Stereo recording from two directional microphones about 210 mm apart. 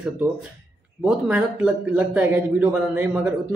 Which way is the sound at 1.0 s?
5° right (ahead or behind).